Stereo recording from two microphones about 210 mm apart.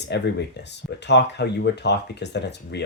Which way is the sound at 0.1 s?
55° left (ahead or behind).